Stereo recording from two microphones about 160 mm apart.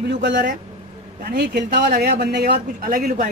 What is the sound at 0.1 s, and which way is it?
Speech, 85° right.